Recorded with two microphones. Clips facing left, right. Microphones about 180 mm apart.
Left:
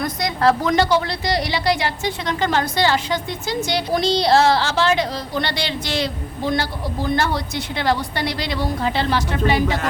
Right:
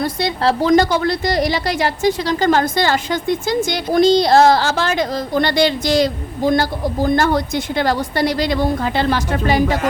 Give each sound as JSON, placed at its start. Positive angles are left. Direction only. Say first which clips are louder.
{"t": 0.0, "sound": "a woman's voice", "louder": "right 1 dB", "side_deg": -30}
{"t": 0.8, "sound": "a woman's voice", "louder": "right 3 dB", "side_deg": -45}